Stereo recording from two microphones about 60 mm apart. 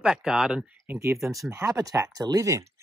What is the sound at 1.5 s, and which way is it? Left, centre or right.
Speech, right.